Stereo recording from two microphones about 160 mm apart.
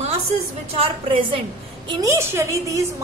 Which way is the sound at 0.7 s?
35° right (ahead or behind).